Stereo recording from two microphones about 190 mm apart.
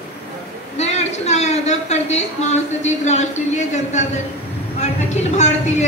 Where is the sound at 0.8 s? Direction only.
35° left (ahead or behind).